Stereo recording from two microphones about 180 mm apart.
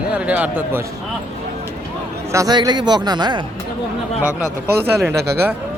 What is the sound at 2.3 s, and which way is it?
Speech, 20° right (ahead or behind).